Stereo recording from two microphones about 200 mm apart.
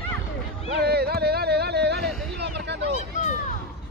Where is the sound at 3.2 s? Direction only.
35° left (ahead or behind).